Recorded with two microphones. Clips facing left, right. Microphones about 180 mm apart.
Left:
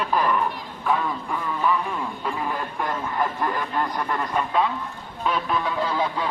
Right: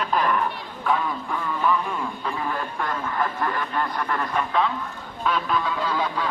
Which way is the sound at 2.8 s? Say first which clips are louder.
Left 2 dB; 15° left (ahead or behind).